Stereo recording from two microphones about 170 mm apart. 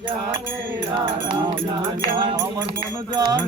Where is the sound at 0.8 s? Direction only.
30° right (ahead or behind).